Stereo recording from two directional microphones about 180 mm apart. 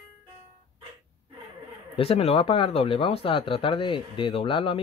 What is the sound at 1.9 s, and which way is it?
Speech, 35° left (ahead or behind).